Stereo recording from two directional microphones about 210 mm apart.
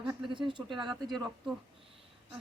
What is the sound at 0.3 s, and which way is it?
Speech, 20° right (ahead or behind).